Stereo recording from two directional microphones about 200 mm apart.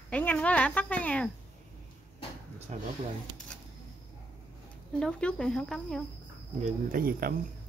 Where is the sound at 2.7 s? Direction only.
35° right (ahead or behind).